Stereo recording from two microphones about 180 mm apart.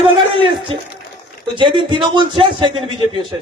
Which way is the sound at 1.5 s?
25° right (ahead or behind).